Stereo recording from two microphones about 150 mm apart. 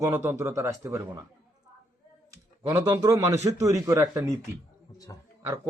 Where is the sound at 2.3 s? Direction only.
20° right (ahead or behind).